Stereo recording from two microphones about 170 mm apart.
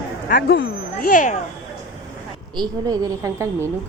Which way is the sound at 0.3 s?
65° left (ahead or behind).